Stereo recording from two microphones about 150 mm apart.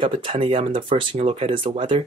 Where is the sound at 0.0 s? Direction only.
35° right (ahead or behind).